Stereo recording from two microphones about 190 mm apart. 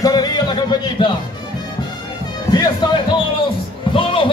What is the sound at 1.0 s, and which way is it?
Music, 25° left (ahead or behind).